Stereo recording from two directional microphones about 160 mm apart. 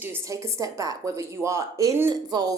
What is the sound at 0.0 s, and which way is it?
A woman's voice, 15° right (ahead or behind).